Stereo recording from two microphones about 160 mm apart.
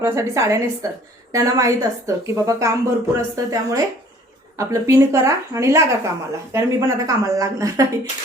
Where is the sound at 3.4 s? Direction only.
20° right (ahead or behind).